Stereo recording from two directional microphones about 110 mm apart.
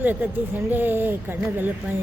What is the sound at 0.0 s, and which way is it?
Speech, 15° right (ahead or behind).